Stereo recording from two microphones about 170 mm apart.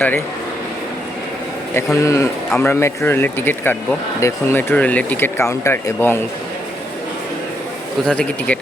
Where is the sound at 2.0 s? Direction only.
15° left (ahead or behind).